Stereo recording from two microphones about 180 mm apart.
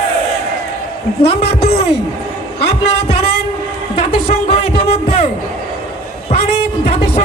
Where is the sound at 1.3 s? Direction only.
35° left (ahead or behind).